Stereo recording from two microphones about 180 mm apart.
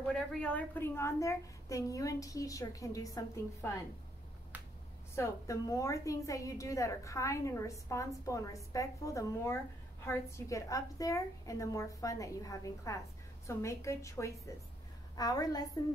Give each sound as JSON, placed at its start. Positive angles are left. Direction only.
{"t": 0.1, "sound": "a woman's voice", "side_deg": 5}
{"t": 5.1, "sound": "a woman's voice", "side_deg": 15}